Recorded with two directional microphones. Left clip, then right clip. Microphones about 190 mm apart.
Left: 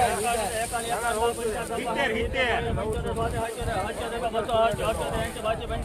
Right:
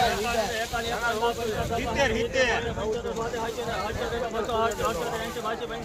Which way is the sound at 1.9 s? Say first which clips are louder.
Right 2 dB; 20° left (ahead or behind).